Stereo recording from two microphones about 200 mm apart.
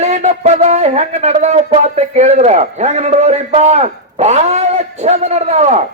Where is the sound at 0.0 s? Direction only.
35° right (ahead or behind).